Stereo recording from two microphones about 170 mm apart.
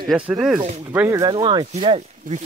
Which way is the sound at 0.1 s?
5° right (ahead or behind).